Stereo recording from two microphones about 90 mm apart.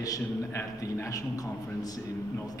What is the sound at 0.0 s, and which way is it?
A man's voice, 40° left (ahead or behind).